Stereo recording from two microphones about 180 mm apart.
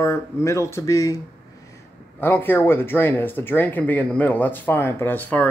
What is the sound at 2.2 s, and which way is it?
Speech, 10° left (ahead or behind).